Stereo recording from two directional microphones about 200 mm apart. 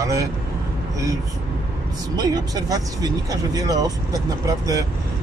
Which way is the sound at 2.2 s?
20° right (ahead or behind).